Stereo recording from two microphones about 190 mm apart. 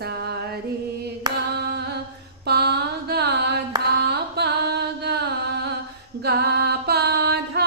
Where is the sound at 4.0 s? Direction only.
60° right (ahead or behind).